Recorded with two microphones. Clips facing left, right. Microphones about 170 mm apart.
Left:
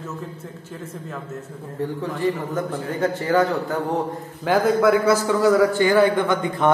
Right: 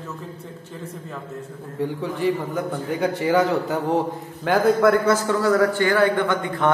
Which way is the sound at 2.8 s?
10° right (ahead or behind).